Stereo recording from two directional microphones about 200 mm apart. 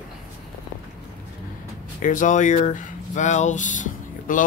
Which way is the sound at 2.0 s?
40° left (ahead or behind).